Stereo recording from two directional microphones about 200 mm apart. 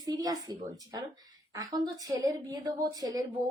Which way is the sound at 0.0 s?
20° right (ahead or behind).